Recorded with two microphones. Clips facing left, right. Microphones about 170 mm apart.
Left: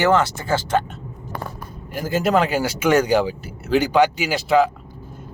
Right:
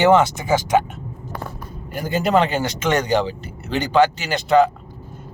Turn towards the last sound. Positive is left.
turn(degrees=5)  # may be behind; listen again after turning